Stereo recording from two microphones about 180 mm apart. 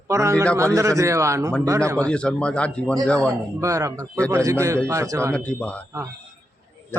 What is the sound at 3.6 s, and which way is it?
A man's voice, 15° right (ahead or behind).